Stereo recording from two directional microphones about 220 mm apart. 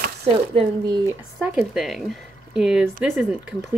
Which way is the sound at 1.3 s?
5° right (ahead or behind).